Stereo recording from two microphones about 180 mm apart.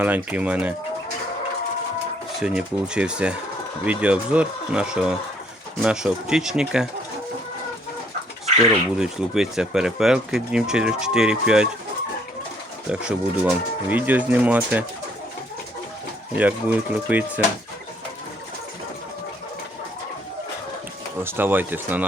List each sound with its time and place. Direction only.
0.0 s speech: 10° right (ahead or behind)
2.4 s speech: 5° right (ahead or behind)
9.0 s speech: 5° right (ahead or behind)
12.9 s speech: 5° right (ahead or behind)
16.4 s speech: 10° right (ahead or behind)
21.2 s speech: 10° right (ahead or behind)